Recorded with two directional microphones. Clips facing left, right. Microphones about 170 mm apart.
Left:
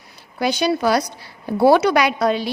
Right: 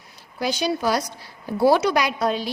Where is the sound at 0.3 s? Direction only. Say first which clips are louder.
Left 4 dB; 65° left (ahead or behind).